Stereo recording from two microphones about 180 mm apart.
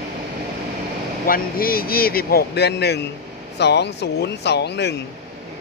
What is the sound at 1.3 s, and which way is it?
Speech, 55° left (ahead or behind).